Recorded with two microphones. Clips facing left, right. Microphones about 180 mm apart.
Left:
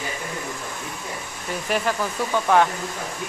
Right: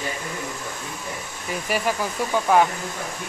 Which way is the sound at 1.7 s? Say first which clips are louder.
Left 1 dB; 10° right (ahead or behind).